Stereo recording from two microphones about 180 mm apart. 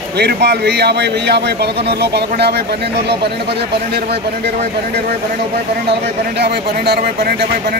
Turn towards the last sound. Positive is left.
turn(degrees=-60)  # may be behind; listen again after turning